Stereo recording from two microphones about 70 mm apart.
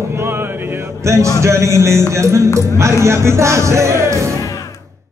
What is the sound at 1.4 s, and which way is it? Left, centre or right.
Music, right.